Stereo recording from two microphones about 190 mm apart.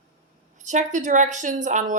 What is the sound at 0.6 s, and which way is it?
A woman's voice, 40° right (ahead or behind).